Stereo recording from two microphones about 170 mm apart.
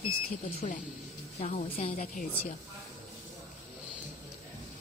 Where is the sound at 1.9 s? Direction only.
50° left (ahead or behind).